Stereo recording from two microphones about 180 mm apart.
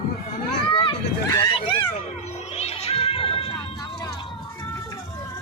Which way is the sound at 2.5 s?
35° left (ahead or behind).